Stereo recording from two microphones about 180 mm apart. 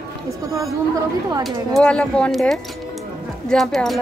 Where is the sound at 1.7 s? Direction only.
5° left (ahead or behind).